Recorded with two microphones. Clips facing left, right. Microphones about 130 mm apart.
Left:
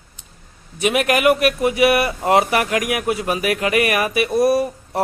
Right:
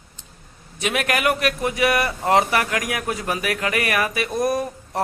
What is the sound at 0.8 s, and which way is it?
A man's voice, 15° left (ahead or behind).